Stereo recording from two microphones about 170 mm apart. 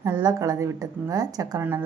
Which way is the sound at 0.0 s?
20° right (ahead or behind).